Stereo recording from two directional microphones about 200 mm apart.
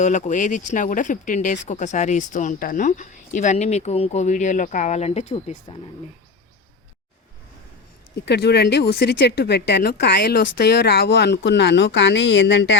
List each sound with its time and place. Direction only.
0.0 s speech: 35° left (ahead or behind)
8.2 s speech: 55° left (ahead or behind)